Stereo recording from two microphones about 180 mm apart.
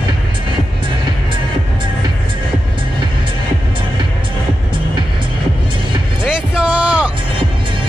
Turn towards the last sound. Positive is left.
turn(degrees=-5)  # may be behind; listen again after turning